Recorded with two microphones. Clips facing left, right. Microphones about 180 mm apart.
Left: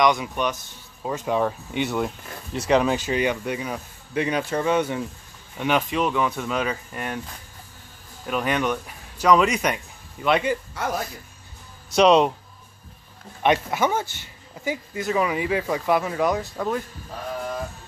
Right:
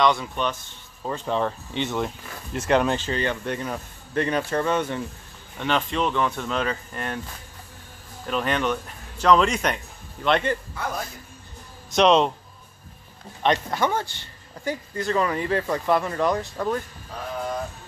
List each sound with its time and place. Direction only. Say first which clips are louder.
0.0 s speech: left 1 dB; 15° left (ahead or behind)
3.1 s speech: left 3 dB; 10° left (ahead or behind)
8.3 s speech: left 1 dB; 5° left (ahead or behind)
11.9 s speech: left 2 dB; 10° left (ahead or behind)
13.4 s speech: left 2 dB; 10° left (ahead or behind)